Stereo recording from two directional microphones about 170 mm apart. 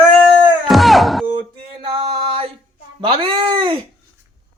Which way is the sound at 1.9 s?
35° right (ahead or behind).